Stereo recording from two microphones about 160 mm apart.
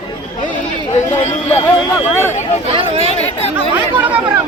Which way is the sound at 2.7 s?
35° right (ahead or behind).